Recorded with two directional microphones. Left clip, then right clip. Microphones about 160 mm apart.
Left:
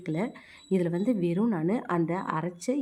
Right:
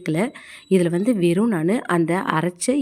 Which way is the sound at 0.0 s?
25° right (ahead or behind).